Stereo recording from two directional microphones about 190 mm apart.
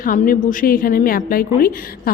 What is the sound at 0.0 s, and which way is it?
A woman's voice, 45° left (ahead or behind).